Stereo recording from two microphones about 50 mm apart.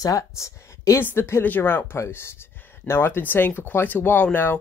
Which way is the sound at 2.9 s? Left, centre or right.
Left.